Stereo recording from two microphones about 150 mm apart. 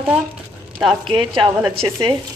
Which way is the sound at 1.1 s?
35° right (ahead or behind).